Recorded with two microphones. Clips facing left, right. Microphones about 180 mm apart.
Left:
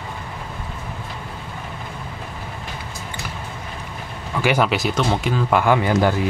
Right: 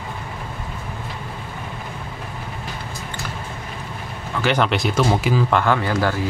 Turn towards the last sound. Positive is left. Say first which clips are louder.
# left 3 dB
turn(degrees=20)  # may be behind; listen again after turning